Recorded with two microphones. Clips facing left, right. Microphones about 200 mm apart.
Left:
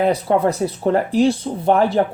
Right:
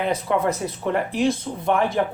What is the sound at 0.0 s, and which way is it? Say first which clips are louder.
Speech: left 5 dB; 35° left (ahead or behind).